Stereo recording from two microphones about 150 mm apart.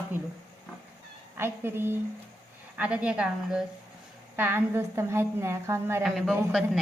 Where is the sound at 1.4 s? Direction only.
15° right (ahead or behind).